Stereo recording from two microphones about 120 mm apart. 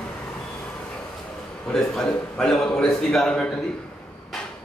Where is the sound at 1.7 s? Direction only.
5° left (ahead or behind).